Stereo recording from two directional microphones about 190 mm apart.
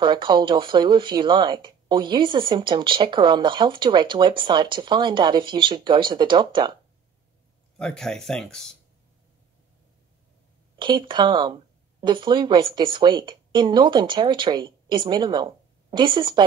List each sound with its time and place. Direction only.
0.0 s speech: 25° right (ahead or behind)
7.7 s speech: 5° left (ahead or behind)
10.8 s speech: 25° right (ahead or behind)